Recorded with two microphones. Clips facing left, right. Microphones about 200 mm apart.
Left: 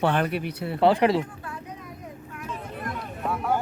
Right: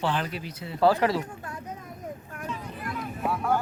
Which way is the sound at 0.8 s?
25° left (ahead or behind).